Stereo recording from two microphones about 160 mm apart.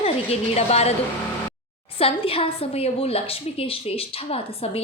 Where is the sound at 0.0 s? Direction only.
40° left (ahead or behind).